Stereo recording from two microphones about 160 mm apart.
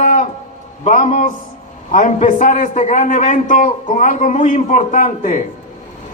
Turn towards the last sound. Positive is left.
turn(degrees=50)  # may be behind; listen again after turning